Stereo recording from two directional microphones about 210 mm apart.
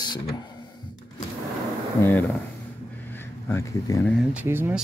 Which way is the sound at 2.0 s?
10° left (ahead or behind).